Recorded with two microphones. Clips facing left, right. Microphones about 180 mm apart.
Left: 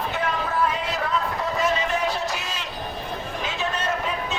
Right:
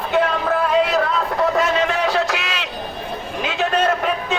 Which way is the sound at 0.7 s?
75° right (ahead or behind).